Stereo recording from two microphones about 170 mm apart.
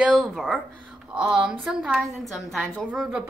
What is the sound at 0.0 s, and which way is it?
A woman's voice, centre (ahead or behind).